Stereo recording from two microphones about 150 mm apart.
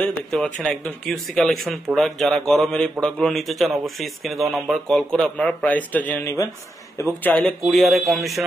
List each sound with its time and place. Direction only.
0.0 s a man's voice: 5° left (ahead or behind)
7.2 s a man's voice: 10° left (ahead or behind)